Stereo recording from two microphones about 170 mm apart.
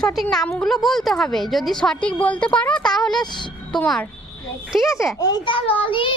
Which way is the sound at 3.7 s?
5° left (ahead or behind).